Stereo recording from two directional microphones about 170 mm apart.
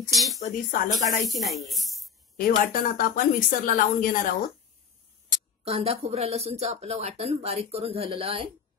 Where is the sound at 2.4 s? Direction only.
55° left (ahead or behind).